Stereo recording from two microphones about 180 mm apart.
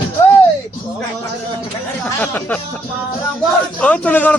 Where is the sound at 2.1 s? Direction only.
10° left (ahead or behind).